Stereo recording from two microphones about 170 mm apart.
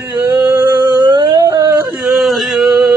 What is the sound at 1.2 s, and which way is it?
Dog, 20° right (ahead or behind).